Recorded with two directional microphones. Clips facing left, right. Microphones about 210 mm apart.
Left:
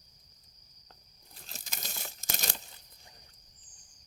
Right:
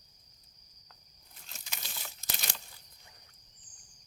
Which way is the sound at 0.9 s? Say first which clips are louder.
Left 3 dB; 35° left (ahead or behind).